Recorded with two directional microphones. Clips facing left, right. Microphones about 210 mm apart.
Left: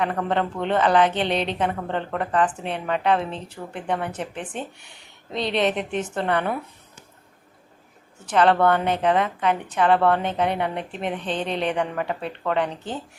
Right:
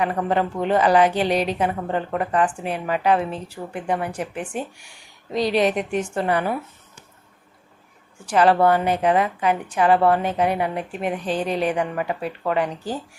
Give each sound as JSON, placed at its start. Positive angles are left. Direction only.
{"t": 0.0, "sound": "a woman's voice", "side_deg": -5}
{"t": 8.2, "sound": "a woman's voice", "side_deg": -5}